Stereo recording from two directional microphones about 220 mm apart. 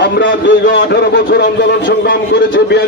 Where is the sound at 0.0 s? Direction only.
55° left (ahead or behind).